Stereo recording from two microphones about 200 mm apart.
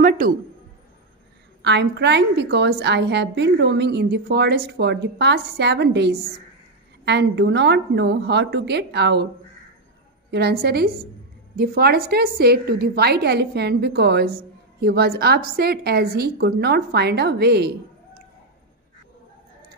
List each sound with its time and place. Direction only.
1.6 s a woman's voice: 60° right (ahead or behind)
10.3 s a woman's voice: 55° right (ahead or behind)